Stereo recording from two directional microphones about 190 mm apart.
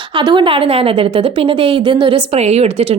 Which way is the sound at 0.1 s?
25° right (ahead or behind).